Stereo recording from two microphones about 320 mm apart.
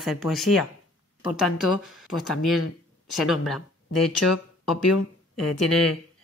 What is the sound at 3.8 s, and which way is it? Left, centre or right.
Speech, left.